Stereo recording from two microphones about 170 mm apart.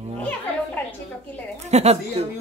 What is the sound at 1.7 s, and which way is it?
Speech, 40° right (ahead or behind).